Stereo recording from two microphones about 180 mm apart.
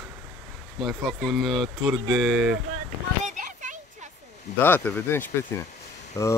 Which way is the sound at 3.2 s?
45° right (ahead or behind).